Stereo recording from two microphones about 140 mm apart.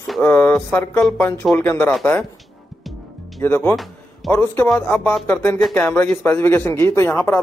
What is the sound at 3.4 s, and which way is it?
Speech, 15° left (ahead or behind).